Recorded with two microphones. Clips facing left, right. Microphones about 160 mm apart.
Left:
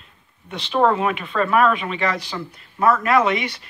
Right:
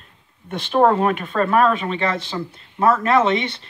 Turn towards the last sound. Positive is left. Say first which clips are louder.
# right 2 dB
turn(degrees=-25)  # may be behind; listen again after turning